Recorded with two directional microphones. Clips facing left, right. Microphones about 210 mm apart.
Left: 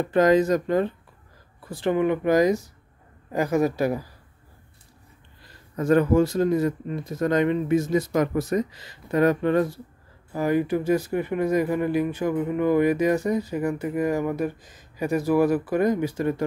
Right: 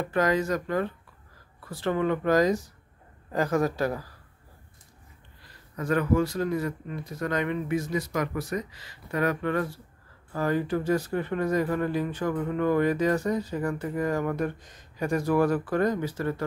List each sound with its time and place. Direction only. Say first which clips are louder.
0.1 s speech: left 7 dB; 25° left (ahead or behind)
5.8 s speech: left 6 dB; 25° left (ahead or behind)
10.3 s speech: left 4 dB; 15° left (ahead or behind)